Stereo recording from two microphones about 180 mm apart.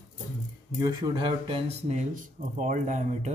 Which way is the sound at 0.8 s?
20° right (ahead or behind).